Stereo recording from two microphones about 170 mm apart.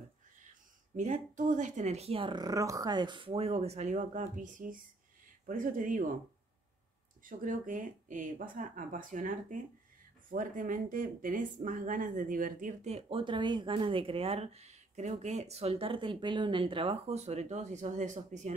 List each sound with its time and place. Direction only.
0.9 s speech: 45° right (ahead or behind)
7.2 s speech: 50° right (ahead or behind)